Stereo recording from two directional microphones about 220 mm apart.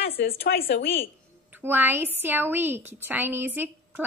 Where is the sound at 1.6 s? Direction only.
10° right (ahead or behind).